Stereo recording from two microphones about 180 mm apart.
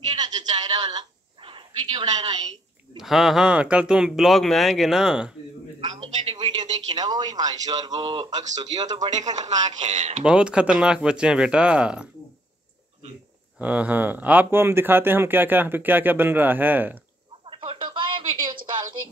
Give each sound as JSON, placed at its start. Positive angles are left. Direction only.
{"t": 0.1, "sound": "a sound", "side_deg": -25}
{"t": 3.0, "sound": "speech", "side_deg": 0}
{"t": 6.2, "sound": "speech", "side_deg": -25}
{"t": 9.3, "sound": "speech", "side_deg": -40}
{"t": 10.2, "sound": "speech", "side_deg": -5}
{"t": 13.6, "sound": "speech", "side_deg": -10}
{"t": 17.5, "sound": "a sound", "side_deg": -30}